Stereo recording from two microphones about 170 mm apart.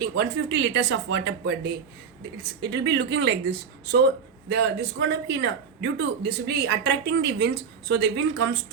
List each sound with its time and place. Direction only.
0.0 s speech: 80° right